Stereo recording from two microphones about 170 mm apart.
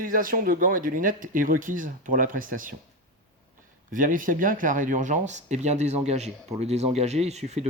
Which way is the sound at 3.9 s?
50° right (ahead or behind).